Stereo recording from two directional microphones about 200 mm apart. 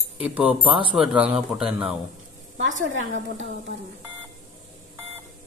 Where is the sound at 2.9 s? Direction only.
75° right (ahead or behind).